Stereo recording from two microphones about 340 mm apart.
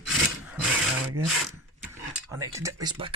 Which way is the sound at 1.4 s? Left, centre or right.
Centre.